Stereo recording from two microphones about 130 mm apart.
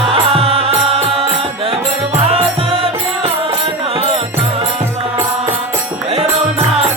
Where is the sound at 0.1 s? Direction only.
45° right (ahead or behind).